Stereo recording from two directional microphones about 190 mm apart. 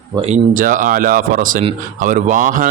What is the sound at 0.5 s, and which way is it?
A man's voice, 45° right (ahead or behind).